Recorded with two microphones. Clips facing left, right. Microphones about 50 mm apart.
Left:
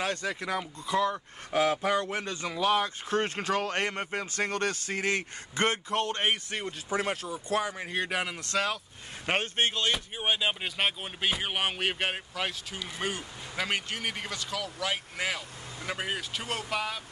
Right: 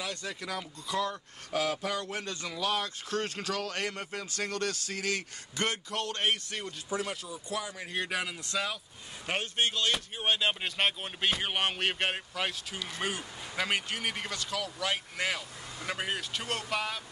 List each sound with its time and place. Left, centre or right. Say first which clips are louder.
0.0 s speech: left 6 dB; left
0.3 s speech: left 5 dB; left
6.9 s speech: left 4 dB; left
7.8 s speech: left 3 dB; left
8.4 s speech: left 4 dB; left
9.2 s speech: left 3 dB; left
9.9 s speech: left 1 dB; centre